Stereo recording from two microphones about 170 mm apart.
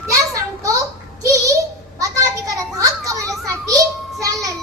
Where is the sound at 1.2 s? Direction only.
20° right (ahead or behind).